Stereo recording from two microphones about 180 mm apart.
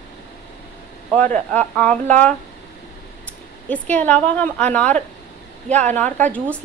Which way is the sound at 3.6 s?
10° left (ahead or behind).